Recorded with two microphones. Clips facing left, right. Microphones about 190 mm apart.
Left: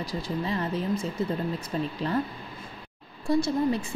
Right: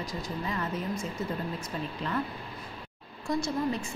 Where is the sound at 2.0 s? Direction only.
35° left (ahead or behind).